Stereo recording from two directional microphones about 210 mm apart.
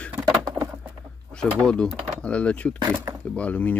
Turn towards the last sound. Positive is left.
turn(degrees=5)  # may be behind; listen again after turning